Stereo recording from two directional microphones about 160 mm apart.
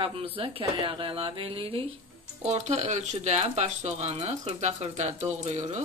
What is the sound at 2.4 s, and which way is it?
Speech, 45° right (ahead or behind).